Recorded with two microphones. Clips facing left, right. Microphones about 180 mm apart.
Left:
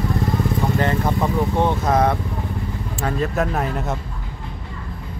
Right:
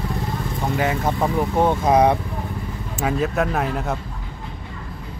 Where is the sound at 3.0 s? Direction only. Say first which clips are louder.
Right 1 dB; centre (ahead or behind).